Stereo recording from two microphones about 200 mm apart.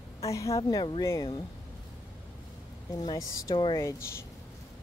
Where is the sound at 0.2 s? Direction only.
15° left (ahead or behind).